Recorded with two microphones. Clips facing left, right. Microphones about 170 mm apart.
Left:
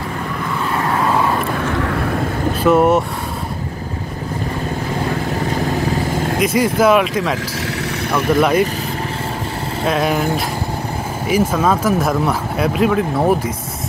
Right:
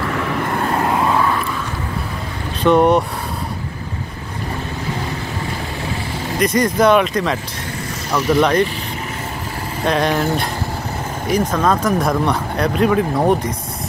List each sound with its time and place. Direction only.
0.0 s vehicle: 80° right
1.5 s vehicle: 65° left (ahead or behind)
2.6 s speech: 5° left (ahead or behind)
6.3 s speech: 5° left (ahead or behind)
9.8 s speech: 5° left (ahead or behind)
11.2 s speech: 5° left (ahead or behind)